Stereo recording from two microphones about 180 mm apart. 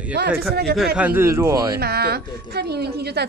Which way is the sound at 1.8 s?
60° right (ahead or behind).